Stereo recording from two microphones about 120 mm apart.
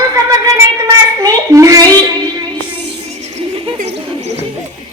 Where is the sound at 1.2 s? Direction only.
30° right (ahead or behind).